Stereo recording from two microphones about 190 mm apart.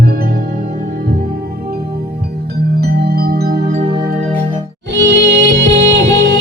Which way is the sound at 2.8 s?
55° right (ahead or behind).